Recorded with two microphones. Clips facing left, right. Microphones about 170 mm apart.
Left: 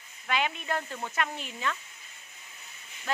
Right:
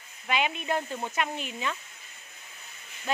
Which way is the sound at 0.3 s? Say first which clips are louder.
Right 2 dB; 20° right (ahead or behind).